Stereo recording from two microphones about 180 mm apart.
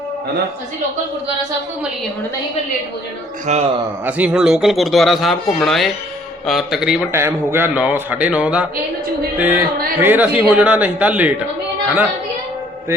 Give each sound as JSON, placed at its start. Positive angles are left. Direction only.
{"t": 3.4, "sound": "a man's voice", "side_deg": -40}
{"t": 4.0, "sound": "speech", "side_deg": -5}
{"t": 7.1, "sound": "speech", "side_deg": -15}